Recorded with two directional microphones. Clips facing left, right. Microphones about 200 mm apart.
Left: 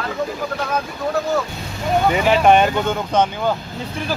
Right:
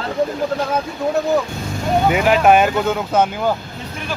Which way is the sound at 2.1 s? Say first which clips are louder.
Right 1 dB; 5° right (ahead or behind).